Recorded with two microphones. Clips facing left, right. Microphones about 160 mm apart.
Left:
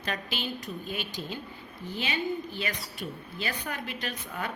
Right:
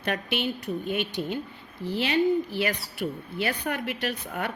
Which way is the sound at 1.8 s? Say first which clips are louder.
Right 8 dB; 75° right (ahead or behind).